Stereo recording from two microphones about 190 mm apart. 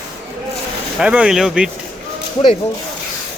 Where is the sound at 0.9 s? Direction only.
5° right (ahead or behind).